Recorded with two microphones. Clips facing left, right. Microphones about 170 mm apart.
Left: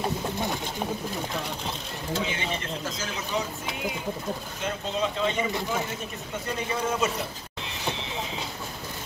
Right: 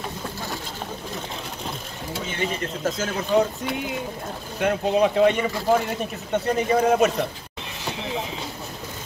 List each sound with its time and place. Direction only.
2.8 s speech: 50° right (ahead or behind); by 7.1 s 65° right (ahead or behind)